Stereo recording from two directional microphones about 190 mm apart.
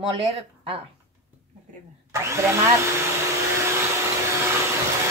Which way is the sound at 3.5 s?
15° right (ahead or behind).